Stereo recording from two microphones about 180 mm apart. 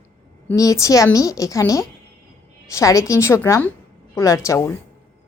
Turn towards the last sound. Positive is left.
turn(degrees=15)  # may be behind; listen again after turning